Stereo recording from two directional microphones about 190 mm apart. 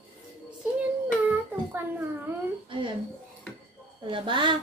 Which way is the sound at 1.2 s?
10° right (ahead or behind).